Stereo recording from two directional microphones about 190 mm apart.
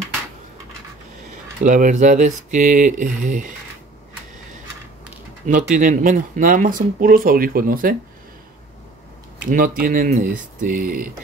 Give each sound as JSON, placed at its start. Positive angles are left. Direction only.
{"t": 1.6, "sound": "speech", "side_deg": -40}
{"t": 5.5, "sound": "speech", "side_deg": -40}
{"t": 9.5, "sound": "speech", "side_deg": -45}